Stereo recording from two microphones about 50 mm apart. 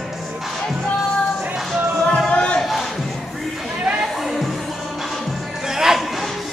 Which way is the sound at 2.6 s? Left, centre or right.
Centre.